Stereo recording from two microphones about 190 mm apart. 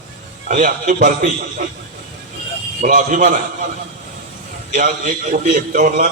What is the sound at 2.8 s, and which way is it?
Speech, 45° right (ahead or behind).